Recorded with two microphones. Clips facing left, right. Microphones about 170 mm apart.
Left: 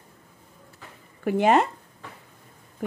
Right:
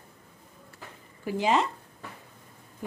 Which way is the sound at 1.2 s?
60° left (ahead or behind).